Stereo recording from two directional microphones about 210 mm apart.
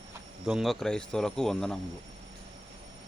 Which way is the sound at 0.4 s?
Centre (ahead or behind).